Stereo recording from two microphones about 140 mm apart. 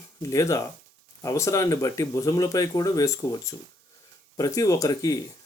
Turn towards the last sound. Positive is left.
turn(degrees=25)  # may be behind; listen again after turning